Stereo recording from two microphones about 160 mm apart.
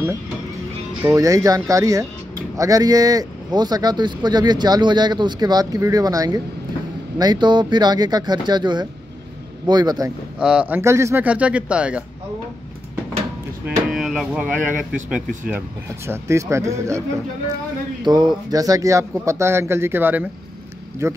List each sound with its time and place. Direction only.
1.1 s speech: 20° right (ahead or behind)
10.4 s speech: 5° right (ahead or behind)
13.7 s speech: 5° right (ahead or behind)
16.1 s speech: 15° right (ahead or behind)
18.0 s speech: 25° right (ahead or behind)